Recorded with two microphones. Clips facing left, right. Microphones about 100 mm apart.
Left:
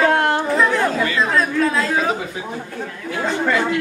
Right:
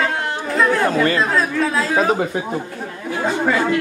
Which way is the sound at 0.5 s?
Centre (ahead or behind).